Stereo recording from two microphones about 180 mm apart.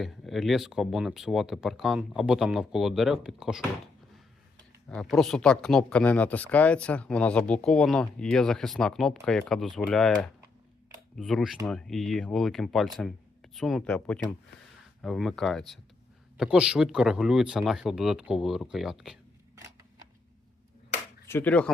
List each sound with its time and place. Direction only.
0.0 s speech: centre (ahead or behind)
4.9 s speech: centre (ahead or behind)
21.2 s speech: 10° left (ahead or behind)